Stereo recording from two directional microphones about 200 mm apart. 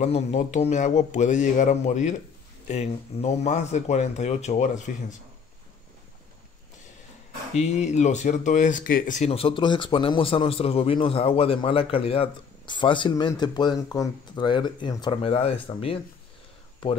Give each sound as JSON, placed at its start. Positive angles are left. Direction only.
{"t": 0.0, "sound": "speech", "side_deg": 35}
{"t": 4.9, "sound": "speech", "side_deg": 45}
{"t": 7.5, "sound": "speech", "side_deg": 35}